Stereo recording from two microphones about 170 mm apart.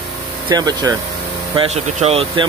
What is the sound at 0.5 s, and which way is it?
Speech, 25° right (ahead or behind).